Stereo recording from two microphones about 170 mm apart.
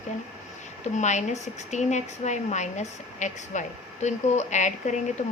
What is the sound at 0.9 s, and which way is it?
A woman's voice, 45° left (ahead or behind).